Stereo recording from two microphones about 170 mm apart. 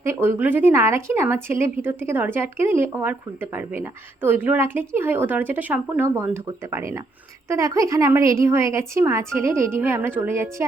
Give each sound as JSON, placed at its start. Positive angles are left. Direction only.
{"t": 0.0, "sound": "speech", "side_deg": -15}